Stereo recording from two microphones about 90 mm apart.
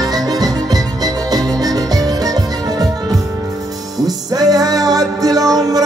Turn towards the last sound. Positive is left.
turn(degrees=-45)  # may be behind; listen again after turning